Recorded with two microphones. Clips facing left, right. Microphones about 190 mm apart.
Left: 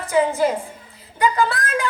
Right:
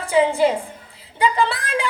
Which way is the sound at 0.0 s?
30° right (ahead or behind).